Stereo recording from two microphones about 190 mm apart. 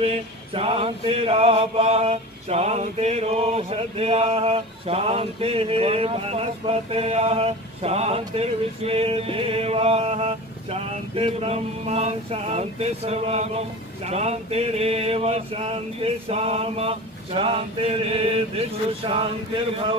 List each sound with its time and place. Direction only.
0.0 s mantra: 30° right (ahead or behind)